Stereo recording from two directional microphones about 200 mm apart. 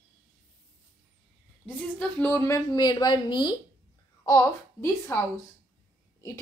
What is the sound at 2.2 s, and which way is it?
A woman's voice, 10° left (ahead or behind).